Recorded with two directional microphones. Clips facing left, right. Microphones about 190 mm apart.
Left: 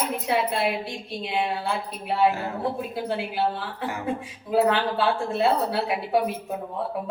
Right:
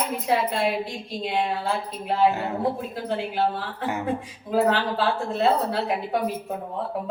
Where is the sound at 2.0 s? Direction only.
5° left (ahead or behind).